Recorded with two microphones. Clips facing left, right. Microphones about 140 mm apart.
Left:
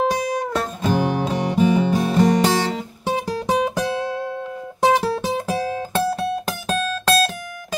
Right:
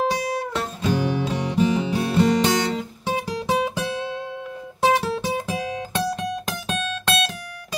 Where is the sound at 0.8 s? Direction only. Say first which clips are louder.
Left 2 dB; 50° left (ahead or behind).